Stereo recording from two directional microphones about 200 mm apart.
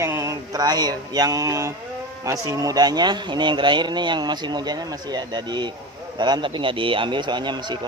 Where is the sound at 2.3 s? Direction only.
15° right (ahead or behind).